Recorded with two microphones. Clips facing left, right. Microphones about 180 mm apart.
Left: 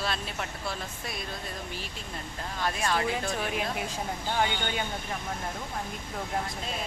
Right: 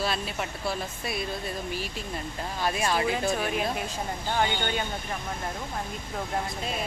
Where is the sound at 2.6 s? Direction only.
10° right (ahead or behind).